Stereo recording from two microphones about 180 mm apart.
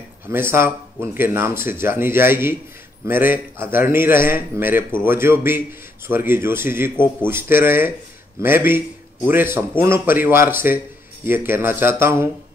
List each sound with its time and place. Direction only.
0.3 s a man's voice: 15° right (ahead or behind)